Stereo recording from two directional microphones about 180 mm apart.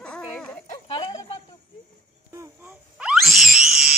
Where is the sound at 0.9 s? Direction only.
25° left (ahead or behind).